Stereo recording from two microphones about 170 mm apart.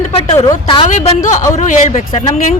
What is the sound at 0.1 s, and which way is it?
Speech, 35° left (ahead or behind).